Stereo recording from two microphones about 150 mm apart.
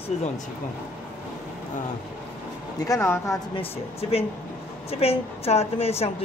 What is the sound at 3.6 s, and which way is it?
A woman's voice, 40° left (ahead or behind).